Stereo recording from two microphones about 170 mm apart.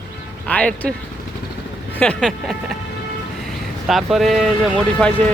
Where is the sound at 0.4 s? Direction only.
10° left (ahead or behind).